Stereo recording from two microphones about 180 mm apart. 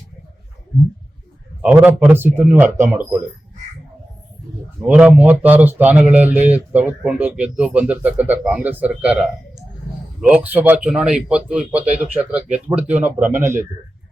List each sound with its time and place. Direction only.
1.6 s speech: 10° right (ahead or behind)
4.8 s speech: 10° right (ahead or behind)